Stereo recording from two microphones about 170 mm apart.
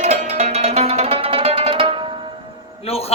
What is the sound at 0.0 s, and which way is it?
Music, 40° right (ahead or behind).